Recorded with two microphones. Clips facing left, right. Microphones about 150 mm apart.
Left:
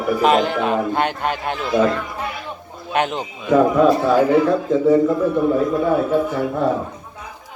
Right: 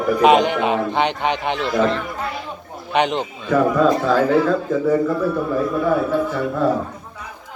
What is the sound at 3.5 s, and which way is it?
A man's voice, 15° left (ahead or behind).